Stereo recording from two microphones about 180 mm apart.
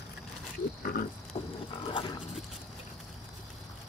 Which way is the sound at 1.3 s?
30° left (ahead or behind).